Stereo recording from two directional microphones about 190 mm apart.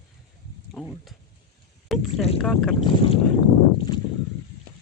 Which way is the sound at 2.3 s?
5° left (ahead or behind).